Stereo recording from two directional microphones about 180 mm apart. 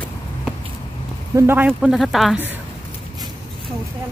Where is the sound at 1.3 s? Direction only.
15° right (ahead or behind).